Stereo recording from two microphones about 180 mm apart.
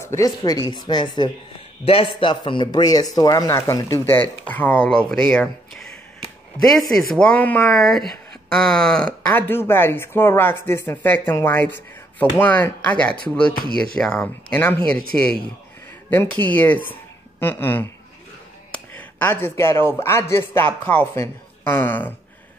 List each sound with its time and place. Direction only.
0.0 s a man's voice: 15° left (ahead or behind)
18.9 s speech: 10° left (ahead or behind)